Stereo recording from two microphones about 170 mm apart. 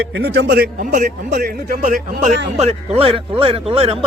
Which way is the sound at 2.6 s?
35° right (ahead or behind).